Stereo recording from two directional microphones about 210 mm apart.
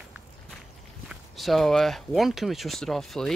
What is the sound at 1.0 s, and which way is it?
Speech, centre (ahead or behind).